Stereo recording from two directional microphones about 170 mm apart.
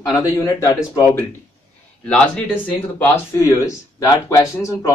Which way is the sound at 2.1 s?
10° left (ahead or behind).